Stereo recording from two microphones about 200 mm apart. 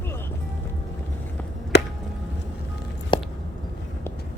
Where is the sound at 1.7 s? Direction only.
55° left (ahead or behind).